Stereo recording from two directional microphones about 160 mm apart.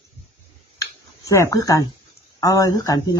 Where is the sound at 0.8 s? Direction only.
20° left (ahead or behind).